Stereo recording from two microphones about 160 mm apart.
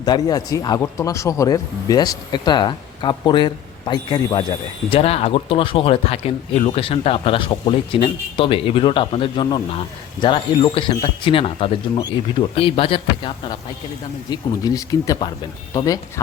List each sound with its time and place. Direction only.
0.0 s a man's voice: 25° left (ahead or behind)
14.3 s speech: 25° left (ahead or behind)